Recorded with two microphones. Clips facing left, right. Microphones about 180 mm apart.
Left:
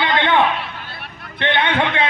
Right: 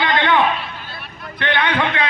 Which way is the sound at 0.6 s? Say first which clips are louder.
Left 1 dB; 60° left (ahead or behind).